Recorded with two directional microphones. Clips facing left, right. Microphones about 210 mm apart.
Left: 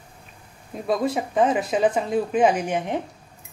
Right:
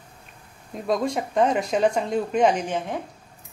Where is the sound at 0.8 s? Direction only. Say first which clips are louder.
Left 1 dB; 5° left (ahead or behind).